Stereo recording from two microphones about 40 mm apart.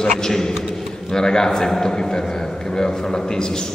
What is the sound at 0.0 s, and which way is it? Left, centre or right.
A man's voice, centre.